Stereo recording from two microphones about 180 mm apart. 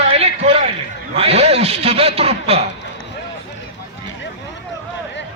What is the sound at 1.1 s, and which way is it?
A man's voice, 35° right (ahead or behind).